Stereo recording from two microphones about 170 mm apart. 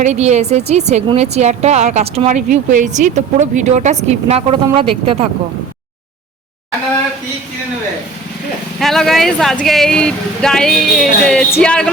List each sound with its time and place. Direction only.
0.0 s a woman's voice: 40° right (ahead or behind)
8.8 s speech: centre (ahead or behind)